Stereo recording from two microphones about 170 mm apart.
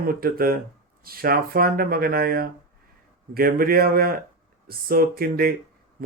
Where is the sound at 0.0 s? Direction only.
60° right (ahead or behind).